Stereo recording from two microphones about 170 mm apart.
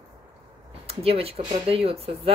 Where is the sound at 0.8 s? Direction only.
35° right (ahead or behind).